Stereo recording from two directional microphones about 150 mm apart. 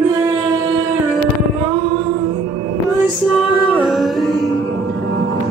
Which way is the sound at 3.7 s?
5° right (ahead or behind).